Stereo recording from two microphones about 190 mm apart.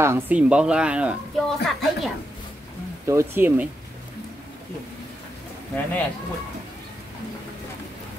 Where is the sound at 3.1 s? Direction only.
15° right (ahead or behind).